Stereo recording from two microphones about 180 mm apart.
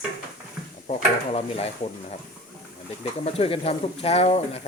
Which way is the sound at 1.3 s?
35° left (ahead or behind).